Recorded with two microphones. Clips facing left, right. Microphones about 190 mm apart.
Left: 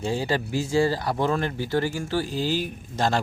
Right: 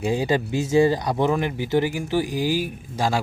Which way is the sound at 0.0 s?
15° right (ahead or behind).